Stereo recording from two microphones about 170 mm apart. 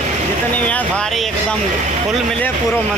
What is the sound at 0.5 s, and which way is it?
Speech, 10° left (ahead or behind).